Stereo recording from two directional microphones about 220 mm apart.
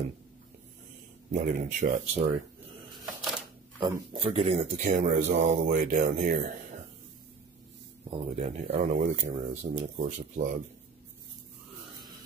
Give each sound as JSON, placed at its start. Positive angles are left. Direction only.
{"t": 1.3, "sound": "speech", "side_deg": -35}
{"t": 3.8, "sound": "speech", "side_deg": -25}
{"t": 8.1, "sound": "speech", "side_deg": -30}